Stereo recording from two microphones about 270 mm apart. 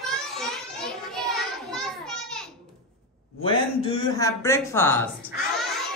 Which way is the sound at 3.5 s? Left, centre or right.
Centre.